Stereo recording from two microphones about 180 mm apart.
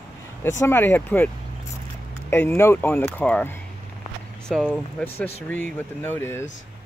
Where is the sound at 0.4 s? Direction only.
15° left (ahead or behind).